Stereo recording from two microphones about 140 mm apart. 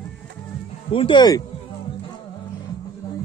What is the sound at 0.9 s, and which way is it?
Speech, 35° left (ahead or behind).